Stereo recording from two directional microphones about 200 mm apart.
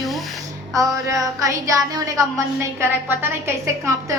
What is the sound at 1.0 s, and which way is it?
A woman's voice, 15° right (ahead or behind).